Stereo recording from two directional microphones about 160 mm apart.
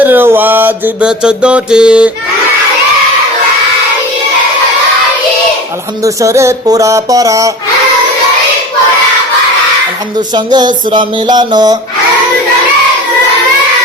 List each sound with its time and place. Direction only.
0.0 s music: 15° right (ahead or behind)
6.0 s music: 20° right (ahead or behind)
10.2 s music: 25° right (ahead or behind)